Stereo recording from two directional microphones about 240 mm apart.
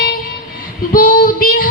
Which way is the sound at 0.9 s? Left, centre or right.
Left.